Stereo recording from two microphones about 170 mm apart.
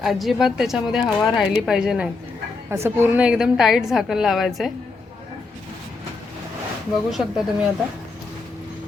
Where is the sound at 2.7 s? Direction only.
15° right (ahead or behind).